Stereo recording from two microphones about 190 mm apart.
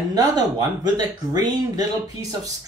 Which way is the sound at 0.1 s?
20° right (ahead or behind).